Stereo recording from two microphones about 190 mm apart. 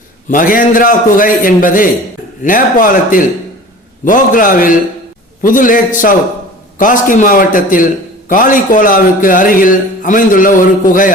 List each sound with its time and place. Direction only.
0.3 s a man's voice: 45° left (ahead or behind)